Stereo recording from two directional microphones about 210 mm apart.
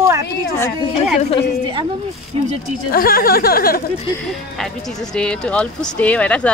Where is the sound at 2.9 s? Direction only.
45° left (ahead or behind).